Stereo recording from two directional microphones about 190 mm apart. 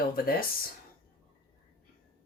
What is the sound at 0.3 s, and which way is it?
Speech, 50° left (ahead or behind).